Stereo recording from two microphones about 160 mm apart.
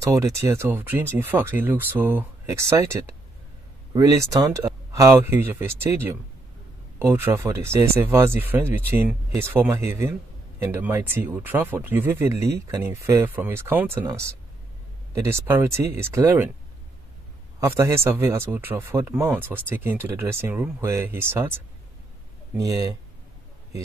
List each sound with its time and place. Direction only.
0.0 s speech: 20° right (ahead or behind)
17.6 s speech: 20° right (ahead or behind)